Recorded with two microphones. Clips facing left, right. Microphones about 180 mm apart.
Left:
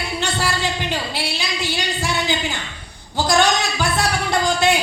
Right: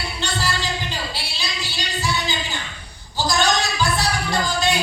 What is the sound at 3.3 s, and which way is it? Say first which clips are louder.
Music: left 3 dB; 55° left (ahead or behind).